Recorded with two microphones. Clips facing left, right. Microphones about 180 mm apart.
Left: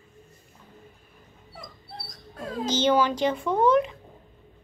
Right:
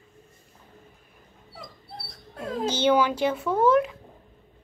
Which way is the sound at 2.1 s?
30° right (ahead or behind).